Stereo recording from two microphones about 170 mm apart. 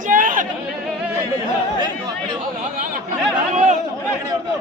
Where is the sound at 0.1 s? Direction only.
50° right (ahead or behind).